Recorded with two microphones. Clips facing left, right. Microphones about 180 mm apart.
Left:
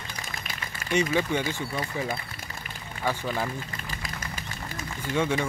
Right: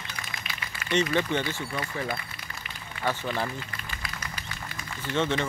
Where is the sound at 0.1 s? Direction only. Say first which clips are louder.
Left 1 dB; 45° left (ahead or behind).